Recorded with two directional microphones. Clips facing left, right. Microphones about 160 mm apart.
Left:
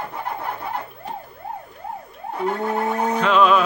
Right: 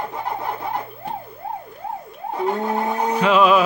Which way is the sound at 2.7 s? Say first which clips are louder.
Even; 10° right (ahead or behind).